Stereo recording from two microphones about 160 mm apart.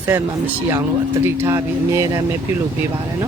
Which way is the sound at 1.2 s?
15° right (ahead or behind).